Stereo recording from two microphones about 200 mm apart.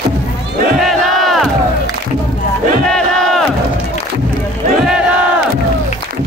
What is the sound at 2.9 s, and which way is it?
Battle cry, centre (ahead or behind).